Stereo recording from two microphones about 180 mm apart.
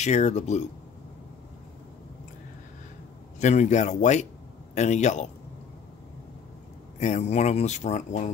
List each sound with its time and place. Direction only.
0.0 s speech: 40° left (ahead or behind)
3.3 s speech: 40° left (ahead or behind)
7.0 s speech: 40° left (ahead or behind)